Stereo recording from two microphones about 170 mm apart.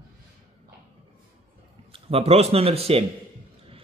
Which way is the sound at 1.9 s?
35° right (ahead or behind).